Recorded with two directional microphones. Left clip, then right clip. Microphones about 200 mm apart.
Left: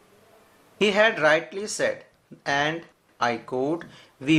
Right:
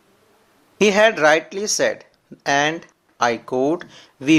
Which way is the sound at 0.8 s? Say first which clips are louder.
Right 5 dB; 35° right (ahead or behind).